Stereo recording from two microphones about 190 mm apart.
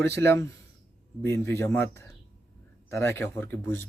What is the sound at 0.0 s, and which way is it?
A man's voice, 15° left (ahead or behind).